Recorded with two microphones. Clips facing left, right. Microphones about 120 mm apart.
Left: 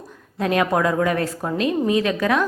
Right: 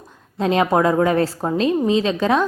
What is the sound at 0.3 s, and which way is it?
A woman's voice, 25° right (ahead or behind).